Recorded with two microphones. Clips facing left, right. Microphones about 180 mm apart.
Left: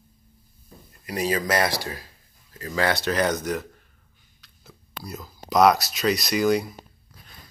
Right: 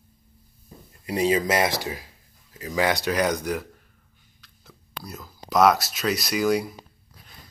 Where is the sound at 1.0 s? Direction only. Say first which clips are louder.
Right 3 dB; 25° right (ahead or behind); by 3.6 s 10° right (ahead or behind).